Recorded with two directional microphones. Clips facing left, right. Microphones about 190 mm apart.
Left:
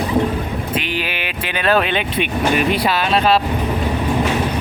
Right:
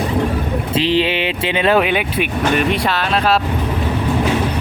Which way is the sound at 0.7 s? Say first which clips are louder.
Right 10 dB; 30° right (ahead or behind).